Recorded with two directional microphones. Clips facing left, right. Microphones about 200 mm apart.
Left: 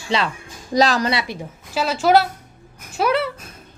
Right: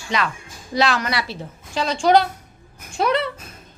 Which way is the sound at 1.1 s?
20° left (ahead or behind).